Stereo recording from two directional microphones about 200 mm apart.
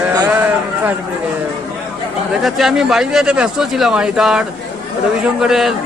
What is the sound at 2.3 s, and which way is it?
Speech, centre (ahead or behind).